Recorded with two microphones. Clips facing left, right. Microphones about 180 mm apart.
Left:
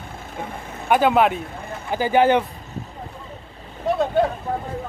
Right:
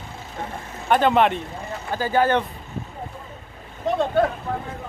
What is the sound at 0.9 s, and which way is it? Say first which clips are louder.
Speech: left 1 dB; 5° left (ahead or behind).